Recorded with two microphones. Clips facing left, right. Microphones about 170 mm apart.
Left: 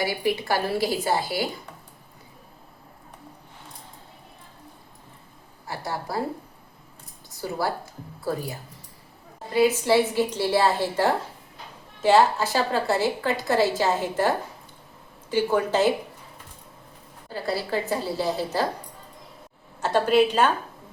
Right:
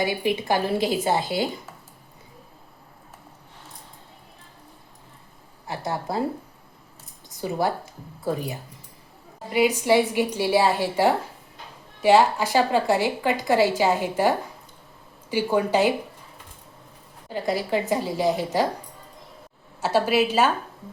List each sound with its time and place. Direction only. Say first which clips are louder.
0.0 s a woman's voice: right 1 dB; 20° right (ahead or behind)
5.6 s a woman's voice: right 3 dB; 20° right (ahead or behind)
8.2 s a woman's voice: right 2 dB; 20° right (ahead or behind)
17.2 s a woman's voice: right 3 dB; 15° right (ahead or behind)
19.8 s a woman's voice: left 1 dB; 5° right (ahead or behind)